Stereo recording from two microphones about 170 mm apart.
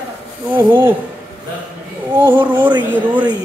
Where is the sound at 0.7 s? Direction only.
10° right (ahead or behind).